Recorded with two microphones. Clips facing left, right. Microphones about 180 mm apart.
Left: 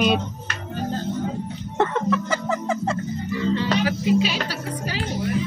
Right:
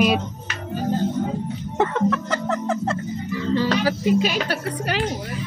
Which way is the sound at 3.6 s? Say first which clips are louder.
Right 2 dB; 40° right (ahead or behind).